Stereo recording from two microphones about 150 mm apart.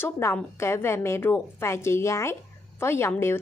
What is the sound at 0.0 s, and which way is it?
A woman's voice, 15° left (ahead or behind).